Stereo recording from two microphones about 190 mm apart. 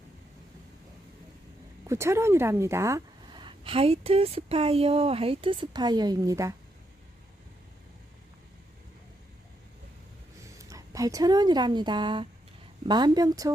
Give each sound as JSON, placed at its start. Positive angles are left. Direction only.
{"t": 1.9, "sound": "speech", "side_deg": -15}
{"t": 10.6, "sound": "speech", "side_deg": -15}